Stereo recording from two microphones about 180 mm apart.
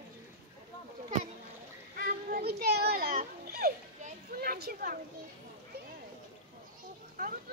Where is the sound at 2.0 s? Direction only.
60° right (ahead or behind).